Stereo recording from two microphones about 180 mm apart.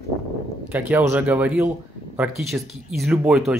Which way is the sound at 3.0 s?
5° right (ahead or behind).